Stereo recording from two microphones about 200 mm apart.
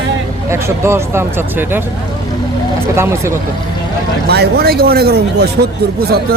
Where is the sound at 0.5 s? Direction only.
15° right (ahead or behind).